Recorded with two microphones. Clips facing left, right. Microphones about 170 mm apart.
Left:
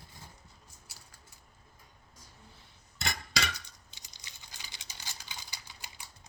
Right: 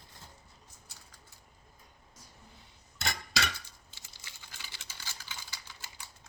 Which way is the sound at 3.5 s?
20° left (ahead or behind).